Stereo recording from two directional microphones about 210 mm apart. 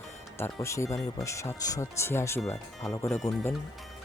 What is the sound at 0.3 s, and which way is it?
Speech, 10° left (ahead or behind).